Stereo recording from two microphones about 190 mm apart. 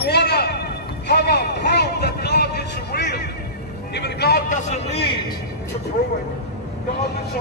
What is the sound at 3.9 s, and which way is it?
Speech, 60° left (ahead or behind).